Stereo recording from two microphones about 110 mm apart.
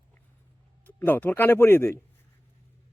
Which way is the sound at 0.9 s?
15° left (ahead or behind).